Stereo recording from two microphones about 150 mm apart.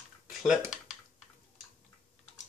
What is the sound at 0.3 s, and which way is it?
Typing, centre (ahead or behind).